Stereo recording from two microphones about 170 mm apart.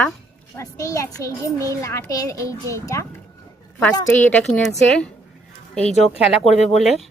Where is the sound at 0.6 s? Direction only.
20° left (ahead or behind).